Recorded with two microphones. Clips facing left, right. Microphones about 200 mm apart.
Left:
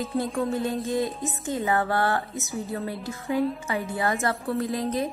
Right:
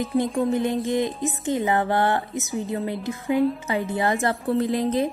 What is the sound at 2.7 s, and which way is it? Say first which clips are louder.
A woman's voice: right 5 dB; 20° right (ahead or behind).